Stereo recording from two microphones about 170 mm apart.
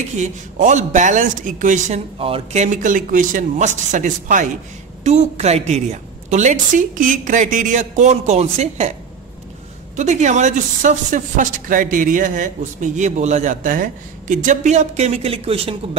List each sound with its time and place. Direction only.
0.2 s speech: 45° right (ahead or behind)
2.1 s speech: 35° right (ahead or behind)
9.9 s speech: 45° right (ahead or behind)